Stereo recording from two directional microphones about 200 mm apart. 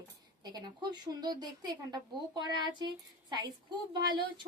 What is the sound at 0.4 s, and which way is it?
A woman's voice, 20° right (ahead or behind).